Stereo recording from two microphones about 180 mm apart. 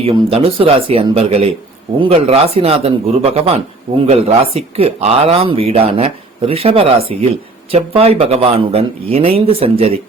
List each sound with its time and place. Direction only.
0.0 s speech: 30° right (ahead or behind)